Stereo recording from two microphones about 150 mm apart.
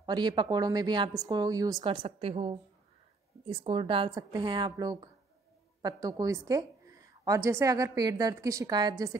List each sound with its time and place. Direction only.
0.0 s a woman's voice: 30° right (ahead or behind)